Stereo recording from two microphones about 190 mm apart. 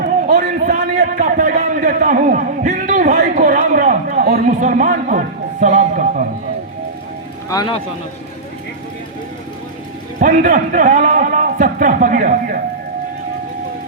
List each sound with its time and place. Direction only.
0.6 s a sound: 40° right (ahead or behind)
7.5 s a man's voice: 20° left (ahead or behind)
10.2 s a man's voice: 45° right (ahead or behind)